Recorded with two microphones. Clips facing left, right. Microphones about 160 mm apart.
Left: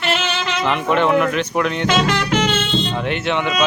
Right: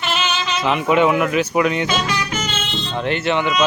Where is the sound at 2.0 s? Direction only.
70° left (ahead or behind).